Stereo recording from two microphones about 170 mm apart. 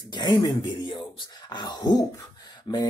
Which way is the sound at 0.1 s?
25° left (ahead or behind).